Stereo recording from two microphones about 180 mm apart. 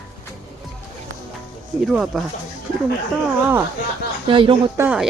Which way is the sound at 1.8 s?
5° right (ahead or behind).